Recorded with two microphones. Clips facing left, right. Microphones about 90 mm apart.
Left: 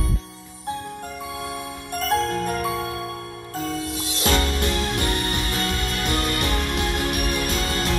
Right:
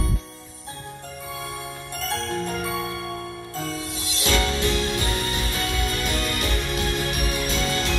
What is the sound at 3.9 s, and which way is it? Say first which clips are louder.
Music: left 1 dB; 50° left (ahead or behind).